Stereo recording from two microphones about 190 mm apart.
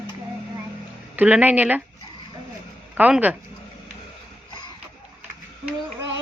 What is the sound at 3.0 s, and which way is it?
Speech, 5° right (ahead or behind).